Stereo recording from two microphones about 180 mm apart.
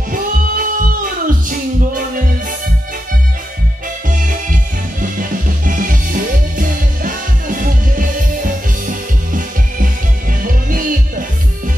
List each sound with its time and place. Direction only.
0.1 s music: 50° right (ahead or behind)
4.1 s music: 45° right (ahead or behind)